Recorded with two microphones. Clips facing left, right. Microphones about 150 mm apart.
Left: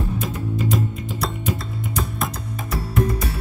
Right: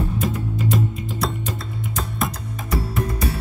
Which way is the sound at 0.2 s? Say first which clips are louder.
Right 1 dB; centre (ahead or behind).